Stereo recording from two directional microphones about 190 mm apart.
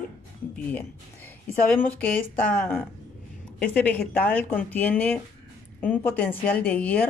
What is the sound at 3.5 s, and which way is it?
Speech, 10° left (ahead or behind).